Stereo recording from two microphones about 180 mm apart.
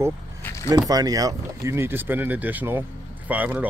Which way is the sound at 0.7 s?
20° right (ahead or behind).